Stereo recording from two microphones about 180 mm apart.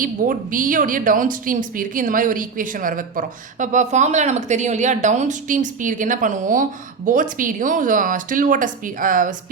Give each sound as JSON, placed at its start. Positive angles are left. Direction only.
{"t": 0.0, "sound": "speech", "side_deg": -50}